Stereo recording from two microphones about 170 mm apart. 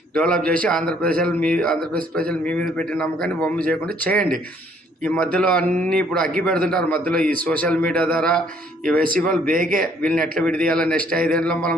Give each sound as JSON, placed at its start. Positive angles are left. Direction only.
{"t": 0.1, "sound": "a man's voice", "side_deg": 5}
{"t": 1.8, "sound": "speech", "side_deg": -60}
{"t": 2.5, "sound": "a man's voice", "side_deg": 5}
{"t": 9.5, "sound": "a man's voice", "side_deg": -55}
{"t": 10.0, "sound": "a man's voice", "side_deg": 5}